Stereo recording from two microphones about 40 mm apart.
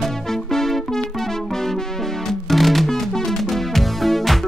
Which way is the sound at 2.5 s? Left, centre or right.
Centre.